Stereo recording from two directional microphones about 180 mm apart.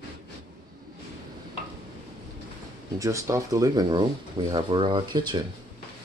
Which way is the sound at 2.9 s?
15° right (ahead or behind).